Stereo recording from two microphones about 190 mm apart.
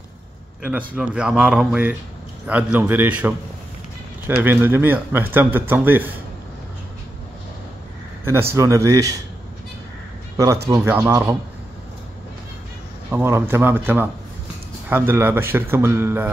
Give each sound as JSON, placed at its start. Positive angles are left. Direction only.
{"t": 0.7, "sound": "a man's voice", "side_deg": -10}
{"t": 4.4, "sound": "a man's voice", "side_deg": -10}
{"t": 8.3, "sound": "a man's voice", "side_deg": -15}
{"t": 10.3, "sound": "a man's voice", "side_deg": -20}
{"t": 13.1, "sound": "a man's voice", "side_deg": -10}